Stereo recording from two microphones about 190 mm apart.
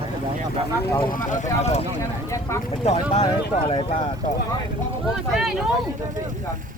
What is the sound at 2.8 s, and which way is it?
Speech, 30° left (ahead or behind).